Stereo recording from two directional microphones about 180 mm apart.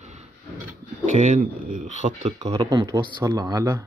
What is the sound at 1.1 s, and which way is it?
Speech, 40° right (ahead or behind).